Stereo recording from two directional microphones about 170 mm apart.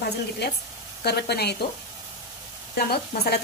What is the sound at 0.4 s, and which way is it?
Speech, 75° left (ahead or behind).